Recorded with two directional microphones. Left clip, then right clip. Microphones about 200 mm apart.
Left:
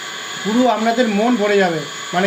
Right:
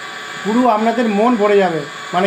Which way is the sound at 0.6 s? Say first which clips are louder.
Right 2 dB; 10° left (ahead or behind).